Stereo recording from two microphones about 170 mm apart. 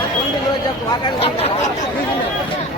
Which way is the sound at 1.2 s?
35° left (ahead or behind).